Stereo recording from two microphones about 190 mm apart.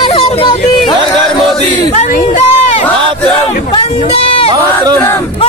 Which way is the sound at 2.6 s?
35° left (ahead or behind).